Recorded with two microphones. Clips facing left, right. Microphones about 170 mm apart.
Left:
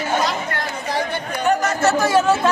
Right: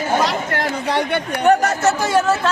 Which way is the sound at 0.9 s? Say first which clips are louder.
Right 2 dB; 70° right (ahead or behind).